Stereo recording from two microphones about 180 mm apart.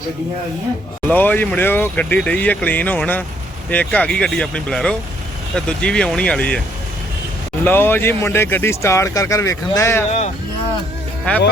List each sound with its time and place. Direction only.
1.0 s speech: 10° left (ahead or behind)
7.6 s speech: 10° left (ahead or behind)
10.1 s speech: 35° left (ahead or behind)